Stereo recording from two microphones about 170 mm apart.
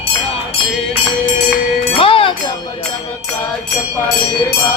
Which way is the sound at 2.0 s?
30° left (ahead or behind).